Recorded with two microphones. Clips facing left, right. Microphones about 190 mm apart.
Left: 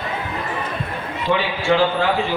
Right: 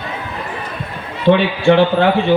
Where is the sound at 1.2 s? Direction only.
65° right (ahead or behind).